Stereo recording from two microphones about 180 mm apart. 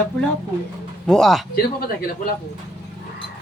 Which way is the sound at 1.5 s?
55° left (ahead or behind).